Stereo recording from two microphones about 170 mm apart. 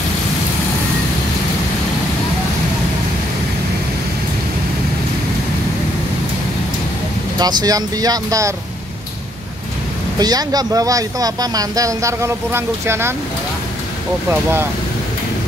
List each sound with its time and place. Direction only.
7.3 s speech: 25° right (ahead or behind)
10.1 s speech: 20° right (ahead or behind)